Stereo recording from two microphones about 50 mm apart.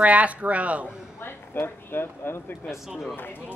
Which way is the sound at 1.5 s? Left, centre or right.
Left.